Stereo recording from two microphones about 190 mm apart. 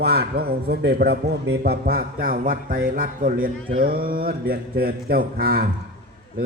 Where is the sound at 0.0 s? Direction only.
55° right (ahead or behind).